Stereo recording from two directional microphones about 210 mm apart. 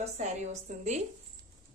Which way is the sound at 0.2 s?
35° right (ahead or behind).